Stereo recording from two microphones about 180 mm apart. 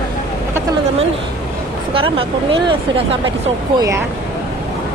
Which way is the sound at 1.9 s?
30° right (ahead or behind).